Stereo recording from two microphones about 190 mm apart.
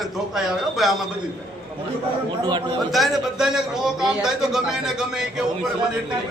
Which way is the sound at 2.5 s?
25° right (ahead or behind).